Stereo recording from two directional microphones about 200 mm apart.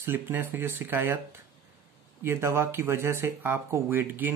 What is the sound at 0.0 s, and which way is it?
Speech, 10° right (ahead or behind).